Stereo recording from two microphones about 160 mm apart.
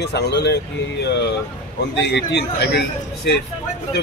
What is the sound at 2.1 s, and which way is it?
Speech, 90° left.